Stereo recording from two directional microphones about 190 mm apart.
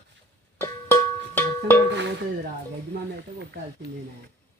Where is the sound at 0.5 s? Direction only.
10° left (ahead or behind).